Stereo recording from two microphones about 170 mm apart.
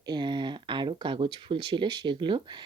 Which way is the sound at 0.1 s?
25° right (ahead or behind).